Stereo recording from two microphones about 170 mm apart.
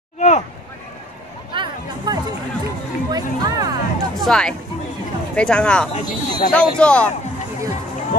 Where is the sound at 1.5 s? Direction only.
25° right (ahead or behind).